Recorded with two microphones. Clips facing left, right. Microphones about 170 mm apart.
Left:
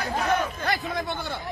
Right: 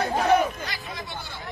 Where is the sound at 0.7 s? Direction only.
55° left (ahead or behind).